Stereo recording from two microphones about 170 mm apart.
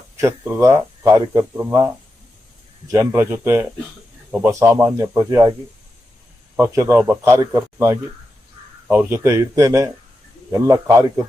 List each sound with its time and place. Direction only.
0.2 s speech: 15° right (ahead or behind)
6.6 s a man's voice: 15° right (ahead or behind)